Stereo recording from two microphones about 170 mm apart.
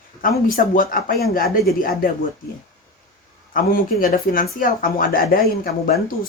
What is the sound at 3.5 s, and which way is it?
Speech, 60° left (ahead or behind).